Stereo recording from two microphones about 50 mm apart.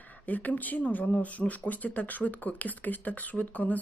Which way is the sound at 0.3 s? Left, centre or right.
Left.